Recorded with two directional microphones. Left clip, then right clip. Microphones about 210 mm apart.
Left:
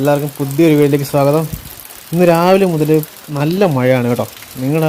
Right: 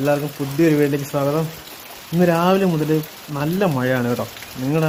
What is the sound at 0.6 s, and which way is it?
Speech, 25° left (ahead or behind).